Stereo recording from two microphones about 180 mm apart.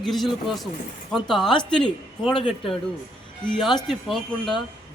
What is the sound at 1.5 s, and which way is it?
A man's voice, 25° left (ahead or behind).